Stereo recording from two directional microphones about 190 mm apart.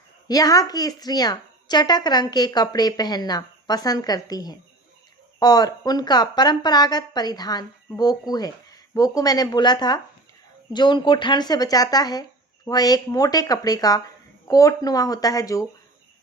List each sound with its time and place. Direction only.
0.3 s speech: 20° left (ahead or behind)